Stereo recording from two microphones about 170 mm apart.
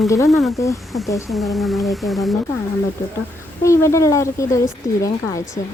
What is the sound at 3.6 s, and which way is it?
A woman's voice, 15° left (ahead or behind).